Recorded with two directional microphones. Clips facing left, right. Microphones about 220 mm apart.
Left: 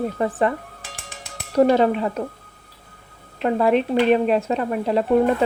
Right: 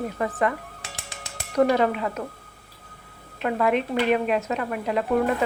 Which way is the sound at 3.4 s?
30° left (ahead or behind).